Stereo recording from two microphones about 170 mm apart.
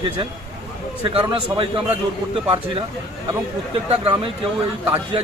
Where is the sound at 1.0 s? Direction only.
30° right (ahead or behind).